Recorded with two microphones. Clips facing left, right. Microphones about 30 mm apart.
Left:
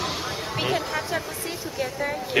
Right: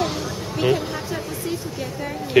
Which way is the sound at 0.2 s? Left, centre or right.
Left.